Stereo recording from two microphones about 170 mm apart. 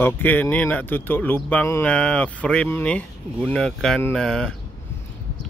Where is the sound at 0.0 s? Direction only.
10° left (ahead or behind).